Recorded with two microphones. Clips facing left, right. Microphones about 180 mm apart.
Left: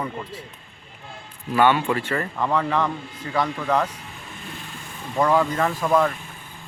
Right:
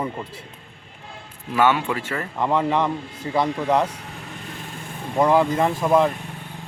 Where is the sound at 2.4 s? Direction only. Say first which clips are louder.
Right 3 dB; 20° right (ahead or behind).